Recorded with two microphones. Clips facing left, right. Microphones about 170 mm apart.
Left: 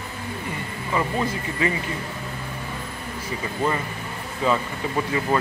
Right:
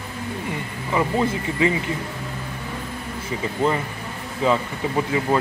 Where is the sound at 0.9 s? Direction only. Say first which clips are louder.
Right 3 dB; 15° right (ahead or behind).